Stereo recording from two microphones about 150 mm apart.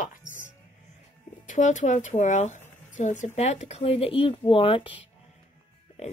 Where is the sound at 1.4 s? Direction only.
55° left (ahead or behind); by 5.0 s 35° left (ahead or behind).